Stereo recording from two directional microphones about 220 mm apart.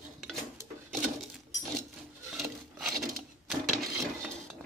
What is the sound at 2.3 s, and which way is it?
Rub, centre (ahead or behind).